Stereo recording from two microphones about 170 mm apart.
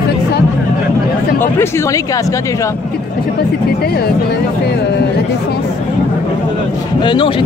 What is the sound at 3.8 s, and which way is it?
Speech, 65° left (ahead or behind).